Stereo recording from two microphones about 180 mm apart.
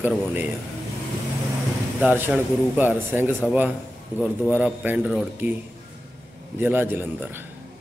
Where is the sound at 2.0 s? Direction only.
10° right (ahead or behind).